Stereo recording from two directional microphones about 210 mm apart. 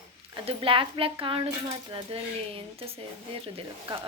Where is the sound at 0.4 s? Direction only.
25° right (ahead or behind).